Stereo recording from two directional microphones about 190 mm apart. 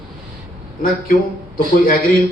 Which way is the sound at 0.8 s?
50° left (ahead or behind).